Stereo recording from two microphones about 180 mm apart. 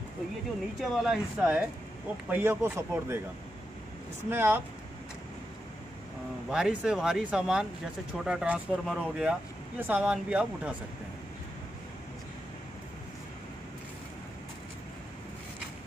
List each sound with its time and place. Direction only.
0.7 s speech: 5° right (ahead or behind)
4.3 s speech: 10° right (ahead or behind)
6.5 s speech: 5° right (ahead or behind)